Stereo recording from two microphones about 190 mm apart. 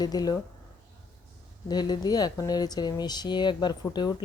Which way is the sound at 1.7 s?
20° left (ahead or behind).